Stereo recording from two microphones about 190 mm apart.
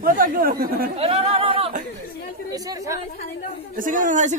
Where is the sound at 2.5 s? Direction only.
20° right (ahead or behind).